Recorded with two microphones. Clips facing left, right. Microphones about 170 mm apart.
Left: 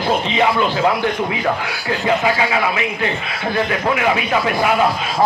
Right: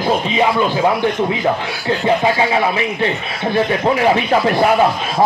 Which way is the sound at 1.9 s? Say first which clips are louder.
Right 2 dB; 30° right (ahead or behind).